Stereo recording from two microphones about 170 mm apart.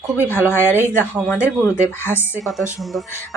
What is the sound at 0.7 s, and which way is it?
Speech, 10° right (ahead or behind).